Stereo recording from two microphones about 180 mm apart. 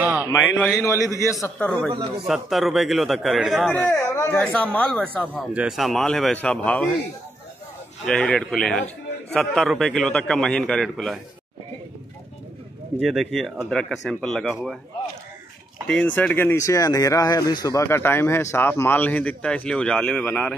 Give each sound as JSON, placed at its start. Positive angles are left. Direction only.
{"t": 0.0, "sound": "a sound", "side_deg": -10}
{"t": 0.3, "sound": "a man's voice", "side_deg": 10}
{"t": 2.2, "sound": "a man's voice", "side_deg": 0}
{"t": 5.5, "sound": "a man's voice", "side_deg": -5}
{"t": 8.0, "sound": "a man's voice", "side_deg": 5}
{"t": 13.0, "sound": "a man's voice", "side_deg": 0}
{"t": 15.9, "sound": "a man's voice", "side_deg": 10}